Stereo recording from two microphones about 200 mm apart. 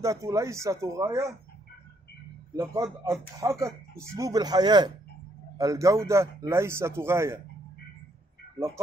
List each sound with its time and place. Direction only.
0.0 s a man's voice: 15° right (ahead or behind)
2.5 s a man's voice: 15° right (ahead or behind)